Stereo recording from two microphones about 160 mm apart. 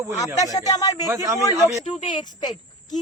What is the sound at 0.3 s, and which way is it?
Speech, 20° left (ahead or behind).